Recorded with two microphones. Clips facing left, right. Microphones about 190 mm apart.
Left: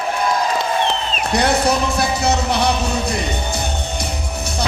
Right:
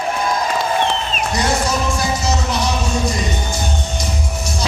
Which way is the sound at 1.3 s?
60° left (ahead or behind).